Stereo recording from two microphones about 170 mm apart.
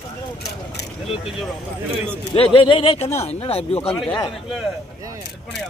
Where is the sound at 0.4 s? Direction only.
80° left.